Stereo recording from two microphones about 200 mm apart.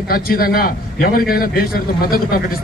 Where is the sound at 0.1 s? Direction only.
45° left (ahead or behind).